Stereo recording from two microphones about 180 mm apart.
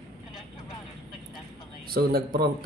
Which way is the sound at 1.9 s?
55° right (ahead or behind).